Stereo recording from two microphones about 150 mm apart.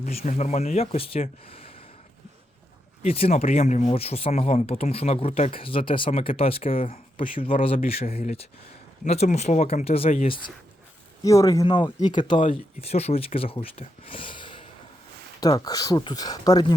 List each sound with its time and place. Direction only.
0.0 s speech: 50° left (ahead or behind)
3.0 s speech: 40° left (ahead or behind)
11.2 s speech: 20° left (ahead or behind)
11.6 s speech: 30° left (ahead or behind)
12.5 s speech: 45° left (ahead or behind); by 16.7 s 25° left (ahead or behind)